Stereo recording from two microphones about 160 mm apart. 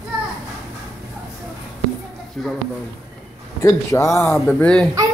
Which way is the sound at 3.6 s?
20° left (ahead or behind).